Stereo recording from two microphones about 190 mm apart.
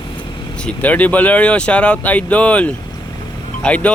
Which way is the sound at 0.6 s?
5° left (ahead or behind).